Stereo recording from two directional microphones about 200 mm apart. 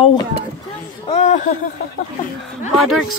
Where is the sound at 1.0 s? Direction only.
35° left (ahead or behind).